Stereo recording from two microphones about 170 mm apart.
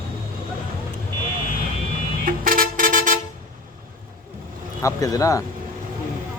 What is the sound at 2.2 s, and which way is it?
Vehicle, 55° right (ahead or behind).